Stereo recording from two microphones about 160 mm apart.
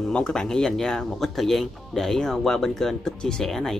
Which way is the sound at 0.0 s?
5° left (ahead or behind).